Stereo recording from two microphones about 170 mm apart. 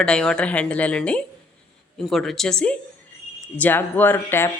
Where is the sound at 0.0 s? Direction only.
5° left (ahead or behind).